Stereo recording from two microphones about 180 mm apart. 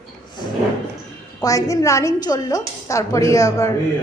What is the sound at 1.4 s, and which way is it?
A woman's voice, 20° left (ahead or behind).